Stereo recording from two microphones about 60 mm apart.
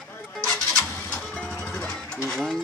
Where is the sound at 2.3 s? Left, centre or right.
Centre.